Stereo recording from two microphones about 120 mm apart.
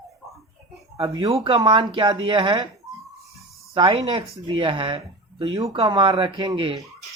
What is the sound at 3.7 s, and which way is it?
Speech, 50° right (ahead or behind).